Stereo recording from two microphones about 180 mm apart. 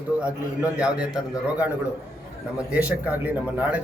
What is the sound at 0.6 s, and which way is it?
A man's voice, 5° right (ahead or behind).